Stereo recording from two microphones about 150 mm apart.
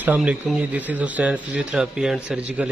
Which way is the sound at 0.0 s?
10° right (ahead or behind).